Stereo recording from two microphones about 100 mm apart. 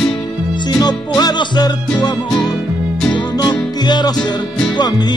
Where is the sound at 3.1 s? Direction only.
45° left (ahead or behind).